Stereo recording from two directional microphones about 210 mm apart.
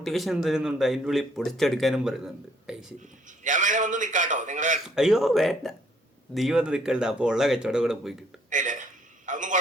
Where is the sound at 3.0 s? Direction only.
35° right (ahead or behind).